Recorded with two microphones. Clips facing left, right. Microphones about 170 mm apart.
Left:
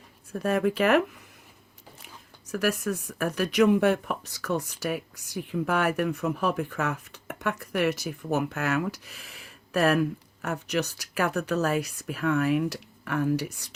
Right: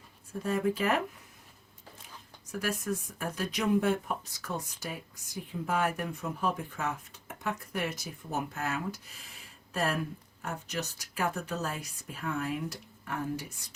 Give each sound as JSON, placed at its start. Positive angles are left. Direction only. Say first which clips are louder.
{"t": 0.3, "sound": "speech", "louder": "left 5 dB", "side_deg": 75}
{"t": 2.5, "sound": "speech", "louder": "left 6 dB", "side_deg": 75}